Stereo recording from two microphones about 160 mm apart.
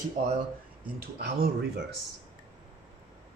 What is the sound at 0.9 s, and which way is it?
Speech, 80° right.